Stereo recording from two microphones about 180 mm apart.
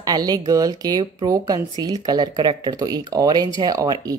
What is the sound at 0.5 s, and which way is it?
Speech, 20° right (ahead or behind).